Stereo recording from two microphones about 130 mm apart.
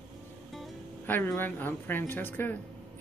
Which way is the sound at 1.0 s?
15° left (ahead or behind).